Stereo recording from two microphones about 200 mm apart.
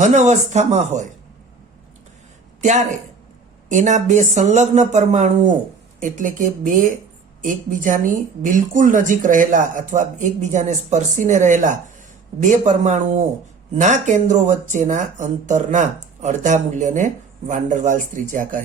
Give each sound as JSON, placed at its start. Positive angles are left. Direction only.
{"t": 0.0, "sound": "a woman's voice", "side_deg": -35}
{"t": 2.6, "sound": "a woman's voice", "side_deg": -35}